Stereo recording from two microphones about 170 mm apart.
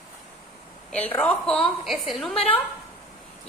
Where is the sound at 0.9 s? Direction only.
10° left (ahead or behind).